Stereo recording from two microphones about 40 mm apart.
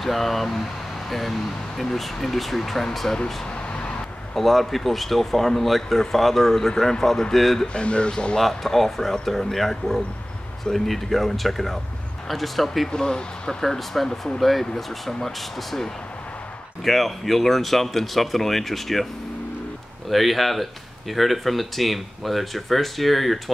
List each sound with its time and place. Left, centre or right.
0.0 s speech: centre
1.8 s speech: centre
4.4 s speech: centre
7.6 s speech: left
8.4 s speech: centre
12.9 s speech: centre
20.1 s speech: centre